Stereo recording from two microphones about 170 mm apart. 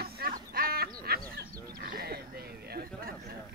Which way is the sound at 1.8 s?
60° right (ahead or behind).